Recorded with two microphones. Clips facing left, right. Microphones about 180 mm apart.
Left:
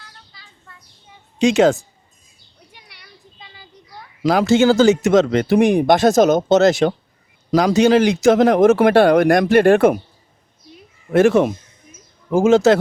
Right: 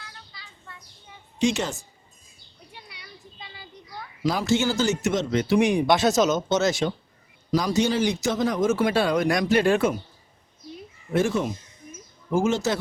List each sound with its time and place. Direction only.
1.4 s speech: 90° left
4.2 s speech: 85° left; by 6.9 s 60° left (ahead or behind)
7.5 s speech: 80° left; by 10.0 s 60° left (ahead or behind)
11.1 s speech: 75° left (ahead or behind)
12.3 s speech: 90° left